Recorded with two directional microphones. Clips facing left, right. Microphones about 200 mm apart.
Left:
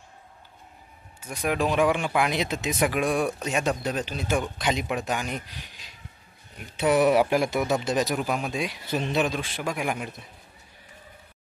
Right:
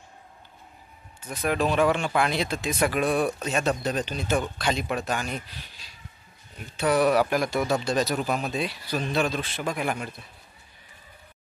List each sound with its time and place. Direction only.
1.2 s speech: 10° left (ahead or behind)